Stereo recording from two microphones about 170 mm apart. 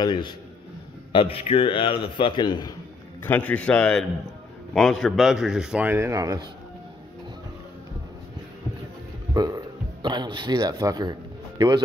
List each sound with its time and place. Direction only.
0.0 s a man's voice: 25° left (ahead or behind)
3.3 s a man's voice: 10° left (ahead or behind); by 6.4 s 20° right (ahead or behind)
9.3 s burping: 20° right (ahead or behind)